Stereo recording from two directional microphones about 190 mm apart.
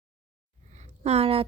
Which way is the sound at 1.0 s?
30° right (ahead or behind).